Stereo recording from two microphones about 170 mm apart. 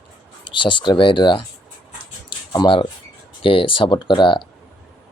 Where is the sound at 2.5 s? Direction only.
30° left (ahead or behind).